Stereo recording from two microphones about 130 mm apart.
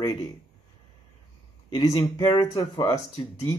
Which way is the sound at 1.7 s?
35° left (ahead or behind).